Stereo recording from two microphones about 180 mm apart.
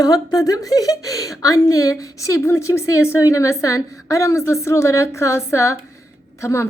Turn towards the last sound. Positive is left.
turn(degrees=15)  # may be behind; listen again after turning